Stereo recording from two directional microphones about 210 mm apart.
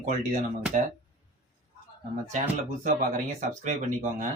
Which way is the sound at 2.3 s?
35° right (ahead or behind).